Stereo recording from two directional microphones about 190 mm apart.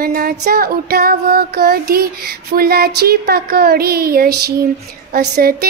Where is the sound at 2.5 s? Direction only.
55° right (ahead or behind).